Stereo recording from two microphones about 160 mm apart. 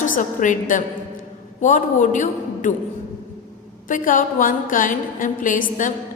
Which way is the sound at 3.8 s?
55° left (ahead or behind).